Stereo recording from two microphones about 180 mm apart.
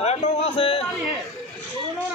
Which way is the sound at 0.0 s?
35° left (ahead or behind).